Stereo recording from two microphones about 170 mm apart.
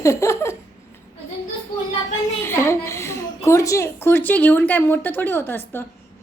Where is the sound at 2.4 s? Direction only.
15° left (ahead or behind).